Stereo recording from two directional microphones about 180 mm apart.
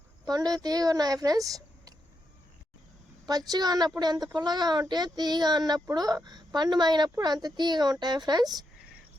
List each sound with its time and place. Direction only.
0.3 s speech: 20° right (ahead or behind)
3.2 s speech: 20° right (ahead or behind)